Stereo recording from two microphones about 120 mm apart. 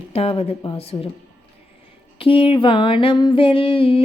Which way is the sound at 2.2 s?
50° left (ahead or behind).